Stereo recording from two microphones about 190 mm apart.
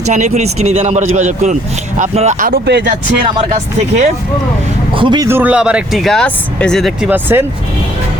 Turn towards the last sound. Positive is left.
turn(degrees=-10)  # may be behind; listen again after turning